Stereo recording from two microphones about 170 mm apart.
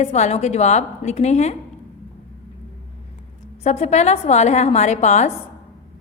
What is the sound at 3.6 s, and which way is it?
A woman's voice, 40° left (ahead or behind).